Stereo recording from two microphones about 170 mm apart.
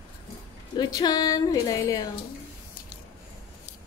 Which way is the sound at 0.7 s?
25° left (ahead or behind).